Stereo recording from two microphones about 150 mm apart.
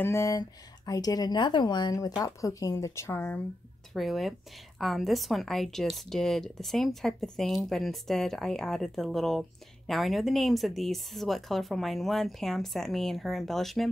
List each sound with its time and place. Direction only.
0.0 s speech: 20° left (ahead or behind)
3.9 s a woman's voice: centre (ahead or behind)